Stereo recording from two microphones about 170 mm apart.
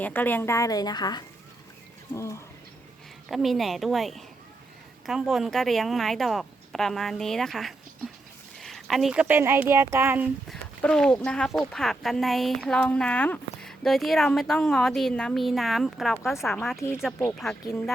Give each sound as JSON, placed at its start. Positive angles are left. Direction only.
{"t": 0.0, "sound": "a woman's voice", "side_deg": 10}
{"t": 3.2, "sound": "speech", "side_deg": 0}
{"t": 10.8, "sound": "speech", "side_deg": 5}